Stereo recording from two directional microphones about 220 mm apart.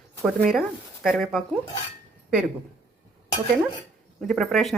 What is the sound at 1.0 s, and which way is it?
Speech, centre (ahead or behind).